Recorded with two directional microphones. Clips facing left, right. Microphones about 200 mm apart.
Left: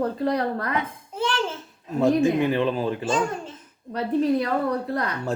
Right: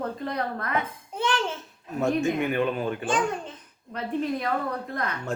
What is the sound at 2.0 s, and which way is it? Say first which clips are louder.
Speech: left 5 dB; 30° left (ahead or behind).